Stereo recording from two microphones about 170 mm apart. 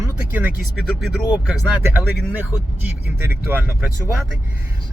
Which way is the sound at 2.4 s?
10° right (ahead or behind).